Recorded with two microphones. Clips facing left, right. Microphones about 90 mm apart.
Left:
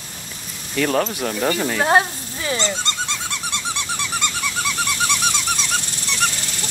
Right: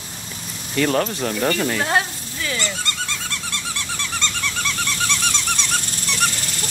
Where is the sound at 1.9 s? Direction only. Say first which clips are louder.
Left 4 dB; 30° left (ahead or behind).